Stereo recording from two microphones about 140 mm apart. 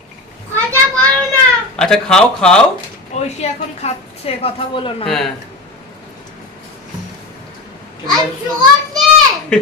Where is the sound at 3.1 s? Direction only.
50° left (ahead or behind).